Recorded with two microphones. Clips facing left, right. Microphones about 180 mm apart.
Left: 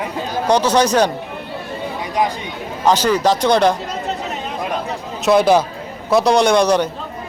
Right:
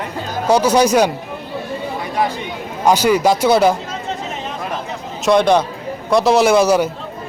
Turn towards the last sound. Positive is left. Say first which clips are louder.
# right 1 dB
turn(degrees=-5)  # may be behind; listen again after turning